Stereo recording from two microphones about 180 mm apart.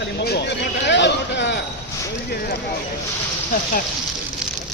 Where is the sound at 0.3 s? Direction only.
70° left (ahead or behind).